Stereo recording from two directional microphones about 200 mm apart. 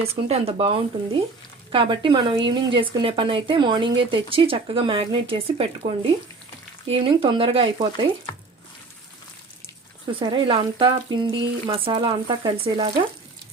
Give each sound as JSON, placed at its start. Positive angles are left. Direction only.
{"t": 0.1, "sound": "speech", "side_deg": -30}
{"t": 10.1, "sound": "speech", "side_deg": -25}